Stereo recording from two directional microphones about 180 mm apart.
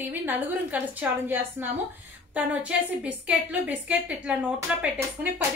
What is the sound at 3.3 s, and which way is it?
A woman's voice, 5° right (ahead or behind).